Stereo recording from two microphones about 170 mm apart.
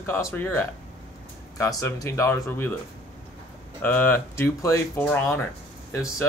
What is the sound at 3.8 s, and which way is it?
Speech, 10° left (ahead or behind).